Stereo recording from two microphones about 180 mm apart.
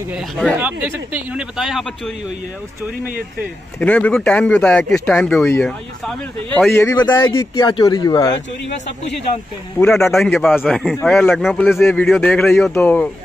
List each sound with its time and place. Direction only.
0.6 s speech: 10° right (ahead or behind)
3.8 s speech: 5° left (ahead or behind)
6.7 s a man's voice: 15° left (ahead or behind)
9.8 s speech: 5° left (ahead or behind)